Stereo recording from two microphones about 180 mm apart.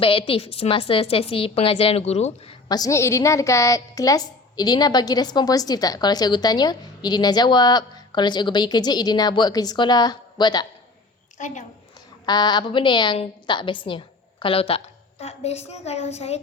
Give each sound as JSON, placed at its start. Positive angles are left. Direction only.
{"t": 0.0, "sound": "a woman's voice", "side_deg": 30}
{"t": 2.6, "sound": "a woman's voice", "side_deg": 20}
{"t": 11.3, "sound": "a woman's voice", "side_deg": 45}
{"t": 12.2, "sound": "a woman's voice", "side_deg": 25}